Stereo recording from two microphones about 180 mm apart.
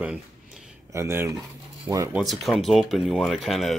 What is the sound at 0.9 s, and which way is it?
Speech, 15° right (ahead or behind).